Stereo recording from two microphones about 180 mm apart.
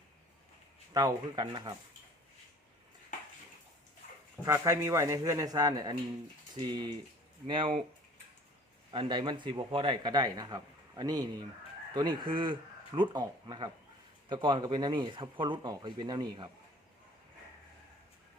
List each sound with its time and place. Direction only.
0.9 s a man's voice: 20° right (ahead or behind)
4.4 s a man's voice: 15° right (ahead or behind)
8.9 s a man's voice: 25° right (ahead or behind)